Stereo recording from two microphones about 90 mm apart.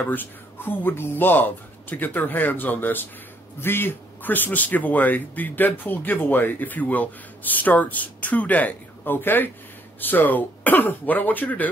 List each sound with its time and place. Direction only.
0.0 s a man's voice: 20° left (ahead or behind)